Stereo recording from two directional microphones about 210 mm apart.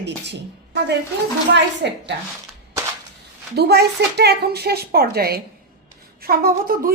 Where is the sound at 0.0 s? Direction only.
55° right (ahead or behind).